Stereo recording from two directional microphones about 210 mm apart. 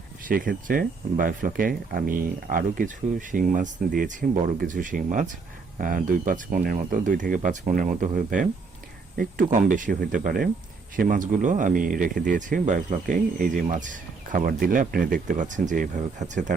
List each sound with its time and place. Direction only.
0.3 s speech: 40° right (ahead or behind)